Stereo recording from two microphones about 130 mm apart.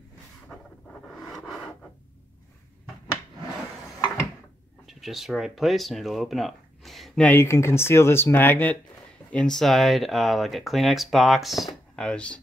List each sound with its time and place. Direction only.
4.8 s speech: centre (ahead or behind)
7.2 s speech: 20° left (ahead or behind)